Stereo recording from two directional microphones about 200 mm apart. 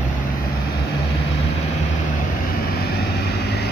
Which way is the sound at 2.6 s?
50° left (ahead or behind).